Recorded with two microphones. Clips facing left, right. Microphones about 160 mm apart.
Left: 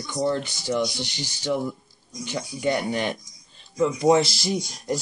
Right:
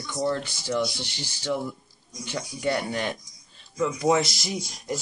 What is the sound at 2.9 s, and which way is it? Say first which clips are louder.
Speech: left 3 dB; 20° left (ahead or behind).